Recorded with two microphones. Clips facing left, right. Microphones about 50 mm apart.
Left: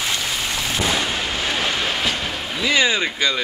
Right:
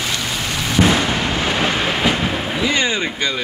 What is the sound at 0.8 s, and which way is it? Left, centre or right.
Artillery fire, right.